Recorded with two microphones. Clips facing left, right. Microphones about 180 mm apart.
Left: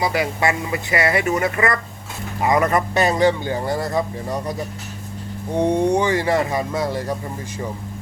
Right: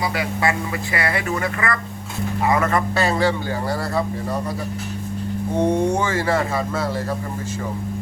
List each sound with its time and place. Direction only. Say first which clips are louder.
0.0 s a man's voice: left 2 dB; 25° left (ahead or behind)
5.5 s a man's voice: left 2 dB; 15° left (ahead or behind)